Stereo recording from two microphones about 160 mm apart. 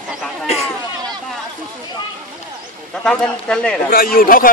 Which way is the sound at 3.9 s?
65° left (ahead or behind).